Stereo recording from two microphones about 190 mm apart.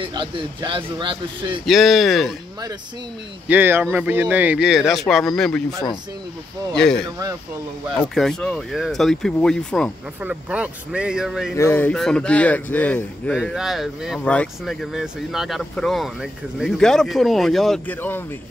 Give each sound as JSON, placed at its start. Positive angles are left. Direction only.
{"t": 0.0, "sound": "a man's voice", "side_deg": -25}
{"t": 1.7, "sound": "a man's voice", "side_deg": 0}
{"t": 3.4, "sound": "a man's voice", "side_deg": -10}
{"t": 8.1, "sound": "a man's voice", "side_deg": 0}
{"t": 10.2, "sound": "a man's voice", "side_deg": -5}
{"t": 11.5, "sound": "a man's voice", "side_deg": 10}